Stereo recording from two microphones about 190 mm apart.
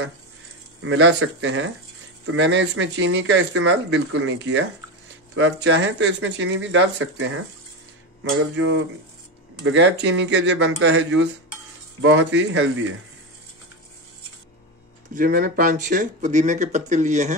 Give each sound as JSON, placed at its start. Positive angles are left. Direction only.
{"t": 0.8, "sound": "speech", "side_deg": -85}
{"t": 2.3, "sound": "speech", "side_deg": -75}
{"t": 8.2, "sound": "speech", "side_deg": -90}
{"t": 9.7, "sound": "speech", "side_deg": -65}
{"t": 15.1, "sound": "speech", "side_deg": -50}